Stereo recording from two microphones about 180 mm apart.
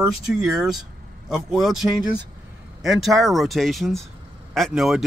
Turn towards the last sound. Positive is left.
turn(degrees=0)  # may be behind; listen again after turning